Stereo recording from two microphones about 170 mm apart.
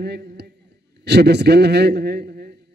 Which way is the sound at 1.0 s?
75° right (ahead or behind).